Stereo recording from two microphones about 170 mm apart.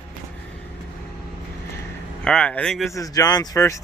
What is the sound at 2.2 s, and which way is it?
Speech, 5° left (ahead or behind).